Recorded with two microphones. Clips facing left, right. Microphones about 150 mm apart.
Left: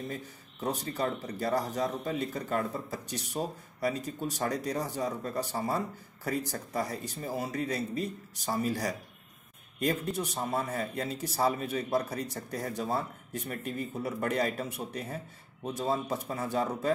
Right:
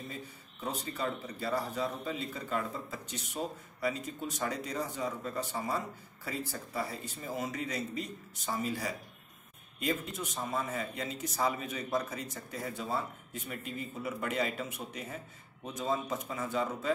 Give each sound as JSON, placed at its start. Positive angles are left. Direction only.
{"t": 0.1, "sound": "speech", "side_deg": 40}